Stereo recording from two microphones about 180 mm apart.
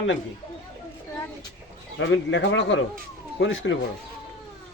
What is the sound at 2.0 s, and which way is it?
A man's voice, 90° left.